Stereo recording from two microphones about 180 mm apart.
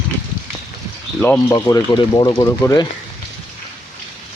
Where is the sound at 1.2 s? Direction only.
10° left (ahead or behind).